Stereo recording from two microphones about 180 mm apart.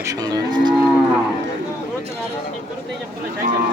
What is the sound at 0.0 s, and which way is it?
Moo, 20° right (ahead or behind).